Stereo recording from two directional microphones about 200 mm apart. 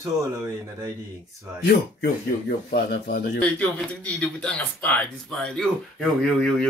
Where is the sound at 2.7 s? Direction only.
55° left (ahead or behind).